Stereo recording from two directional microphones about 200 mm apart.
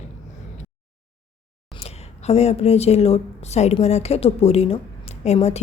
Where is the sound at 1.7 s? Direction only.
30° left (ahead or behind).